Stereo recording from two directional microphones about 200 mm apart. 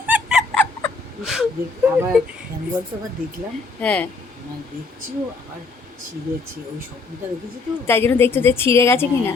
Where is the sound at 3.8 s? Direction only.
5° left (ahead or behind).